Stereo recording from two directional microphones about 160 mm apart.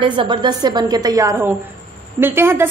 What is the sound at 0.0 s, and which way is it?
A woman's voice, 30° right (ahead or behind).